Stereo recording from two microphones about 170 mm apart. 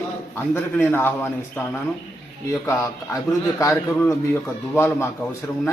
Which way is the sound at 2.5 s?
20° left (ahead or behind).